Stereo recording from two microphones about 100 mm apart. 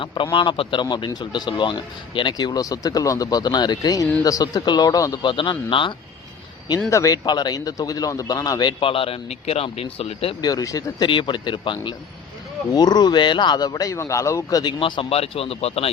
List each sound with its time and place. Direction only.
0.0 s speech: 55° left (ahead or behind); by 5.2 s 35° left (ahead or behind)
5.2 s a man's voice: 55° left (ahead or behind)
6.9 s speech: 35° left (ahead or behind)
8.8 s speech: 70° left (ahead or behind)
10.4 s speech: 35° left (ahead or behind)
11.0 s a man's voice: 55° left (ahead or behind)
12.7 s speech: 45° left (ahead or behind)
14.6 s speech: 50° left (ahead or behind)
15.1 s a man's voice: 80° left